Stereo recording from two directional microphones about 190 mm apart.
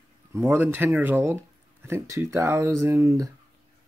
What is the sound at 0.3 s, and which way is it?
Speech, 15° right (ahead or behind).